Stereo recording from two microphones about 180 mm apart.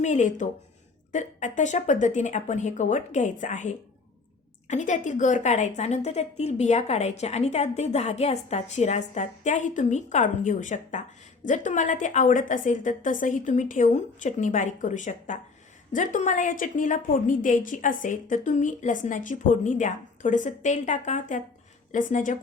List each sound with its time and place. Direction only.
0.0 s a woman's voice: 40° left (ahead or behind)